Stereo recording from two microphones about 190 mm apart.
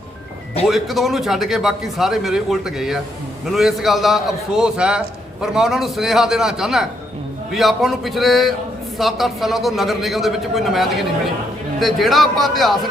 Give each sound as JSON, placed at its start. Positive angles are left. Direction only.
{"t": 0.7, "sound": "a man's voice", "side_deg": 0}